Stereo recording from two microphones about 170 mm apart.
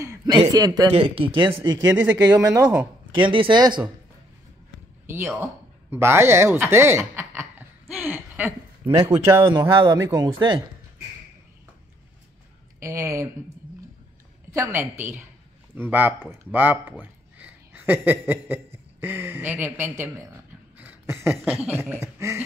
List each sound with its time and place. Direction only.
0.0 s a man's voice: 15° right (ahead or behind)
2.0 s speech: 10° right (ahead or behind)
3.2 s speech: 30° right (ahead or behind)
5.0 s speech: 15° right (ahead or behind)
6.7 s chuckle: 15° right (ahead or behind)
9.1 s speech: 15° right (ahead or behind)
12.8 s speech: 15° right (ahead or behind)
14.5 s speech: 15° right (ahead or behind)
20.7 s a sound: 10° right (ahead or behind)
21.5 s speech: 5° right (ahead or behind)